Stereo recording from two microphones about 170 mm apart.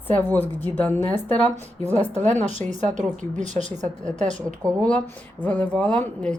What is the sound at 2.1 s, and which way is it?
Speech, 40° right (ahead or behind).